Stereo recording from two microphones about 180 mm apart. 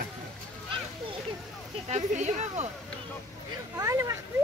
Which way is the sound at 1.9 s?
40° right (ahead or behind).